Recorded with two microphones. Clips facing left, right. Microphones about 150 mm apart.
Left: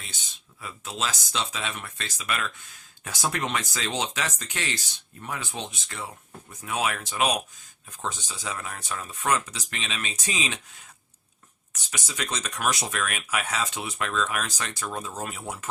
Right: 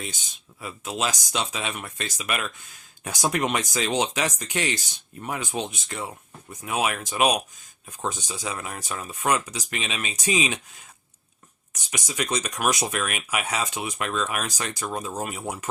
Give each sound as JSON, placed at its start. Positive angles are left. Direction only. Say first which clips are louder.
{"t": 0.6, "sound": "speech", "louder": "right 4 dB", "side_deg": -15}
{"t": 11.9, "sound": "speech", "louder": "right 5 dB", "side_deg": -15}